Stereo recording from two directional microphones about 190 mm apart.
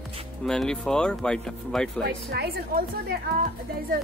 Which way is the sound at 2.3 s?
55° right (ahead or behind).